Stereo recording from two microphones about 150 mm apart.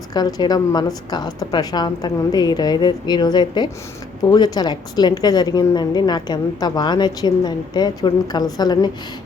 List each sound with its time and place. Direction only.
0.1 s a woman's voice: 25° left (ahead or behind)